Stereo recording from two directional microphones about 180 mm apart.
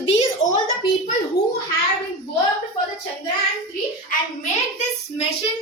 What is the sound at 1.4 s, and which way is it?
Speech, 70° left (ahead or behind).